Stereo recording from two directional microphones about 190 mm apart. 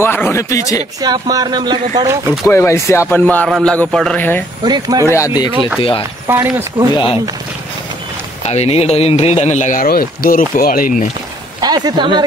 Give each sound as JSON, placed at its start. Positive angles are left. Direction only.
{"t": 0.0, "sound": "speech", "side_deg": 10}
{"t": 1.0, "sound": "speech", "side_deg": -20}
{"t": 2.4, "sound": "speech", "side_deg": 15}
{"t": 4.6, "sound": "speech", "side_deg": -20}
{"t": 5.1, "sound": "speech", "side_deg": 20}
{"t": 6.2, "sound": "speech", "side_deg": -15}
{"t": 6.9, "sound": "speech", "side_deg": 25}
{"t": 8.5, "sound": "a man's voice", "side_deg": 35}
{"t": 11.6, "sound": "speech", "side_deg": -20}